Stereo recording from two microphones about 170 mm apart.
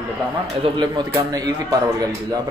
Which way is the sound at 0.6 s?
25° right (ahead or behind).